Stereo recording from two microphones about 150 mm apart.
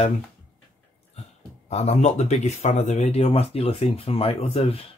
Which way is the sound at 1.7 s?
45° left (ahead or behind).